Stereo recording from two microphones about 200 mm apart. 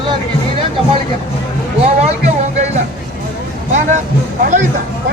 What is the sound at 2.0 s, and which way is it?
Music, 35° right (ahead or behind).